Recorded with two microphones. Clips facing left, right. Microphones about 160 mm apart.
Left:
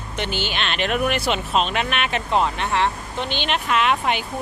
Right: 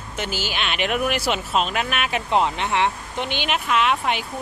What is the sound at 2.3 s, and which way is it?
Speech, 20° right (ahead or behind).